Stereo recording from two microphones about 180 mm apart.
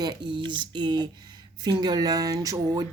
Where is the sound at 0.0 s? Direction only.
25° right (ahead or behind).